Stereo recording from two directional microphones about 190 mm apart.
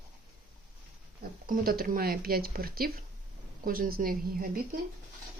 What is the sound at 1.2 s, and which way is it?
Speech, 50° right (ahead or behind).